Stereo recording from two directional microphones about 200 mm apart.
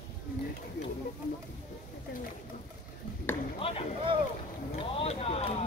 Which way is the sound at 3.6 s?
30° left (ahead or behind).